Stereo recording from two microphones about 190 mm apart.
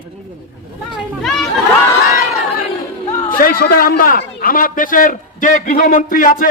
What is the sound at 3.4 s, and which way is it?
A man's voice, 50° left (ahead or behind).